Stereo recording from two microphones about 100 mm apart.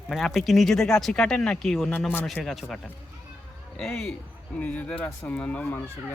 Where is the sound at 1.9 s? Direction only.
15° left (ahead or behind).